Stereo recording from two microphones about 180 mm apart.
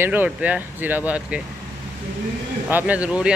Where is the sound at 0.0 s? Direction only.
10° right (ahead or behind).